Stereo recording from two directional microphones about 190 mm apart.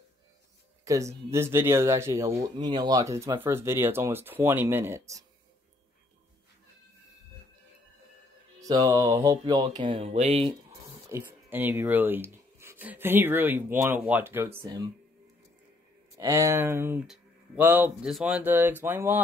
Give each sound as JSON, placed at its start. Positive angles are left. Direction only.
{"t": 0.8, "sound": "speech", "side_deg": -15}
{"t": 8.5, "sound": "speech", "side_deg": -20}
{"t": 11.1, "sound": "speech", "side_deg": -10}
{"t": 16.2, "sound": "speech", "side_deg": -15}